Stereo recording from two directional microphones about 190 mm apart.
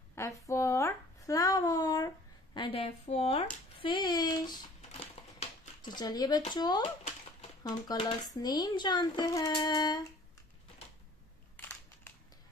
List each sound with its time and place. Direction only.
0.2 s speech: 15° left (ahead or behind)
0.5 s a sound: 15° left (ahead or behind)
5.8 s a child's voice: 20° left (ahead or behind)